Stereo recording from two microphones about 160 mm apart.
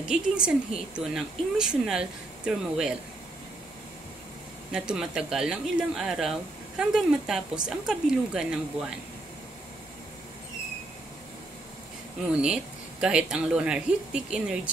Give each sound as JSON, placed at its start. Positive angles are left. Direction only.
{"t": 0.0, "sound": "a woman's voice", "side_deg": -5}
{"t": 4.7, "sound": "a woman's voice", "side_deg": -5}
{"t": 12.3, "sound": "speech", "side_deg": -5}